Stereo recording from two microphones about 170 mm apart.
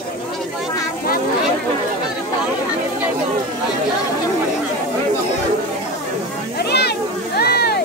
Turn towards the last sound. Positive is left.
turn(degrees=70)  # may be behind; listen again after turning